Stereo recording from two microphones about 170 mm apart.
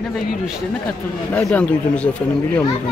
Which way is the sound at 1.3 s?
10° left (ahead or behind).